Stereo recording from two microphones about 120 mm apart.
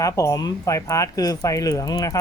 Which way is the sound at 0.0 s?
30° left (ahead or behind).